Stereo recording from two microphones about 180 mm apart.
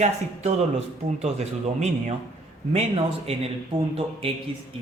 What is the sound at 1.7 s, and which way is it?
Speech, 40° right (ahead or behind).